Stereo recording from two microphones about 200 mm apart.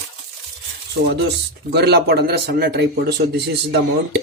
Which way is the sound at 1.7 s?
55° right (ahead or behind).